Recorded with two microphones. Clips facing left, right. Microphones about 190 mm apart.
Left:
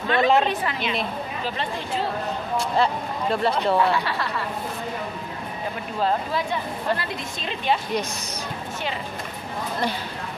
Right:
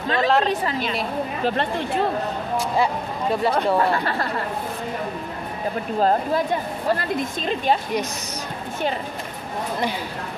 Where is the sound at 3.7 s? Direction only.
45° right (ahead or behind).